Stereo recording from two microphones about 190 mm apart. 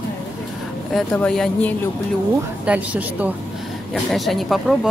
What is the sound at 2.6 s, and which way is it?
A woman's voice, 5° right (ahead or behind).